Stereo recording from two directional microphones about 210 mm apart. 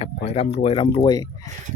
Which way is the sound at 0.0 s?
30° left (ahead or behind).